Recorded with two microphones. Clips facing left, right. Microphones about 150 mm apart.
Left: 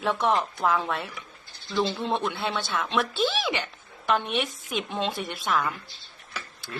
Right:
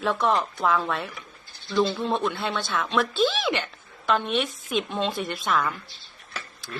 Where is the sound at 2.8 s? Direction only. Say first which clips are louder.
Right 4 dB; 15° left (ahead or behind).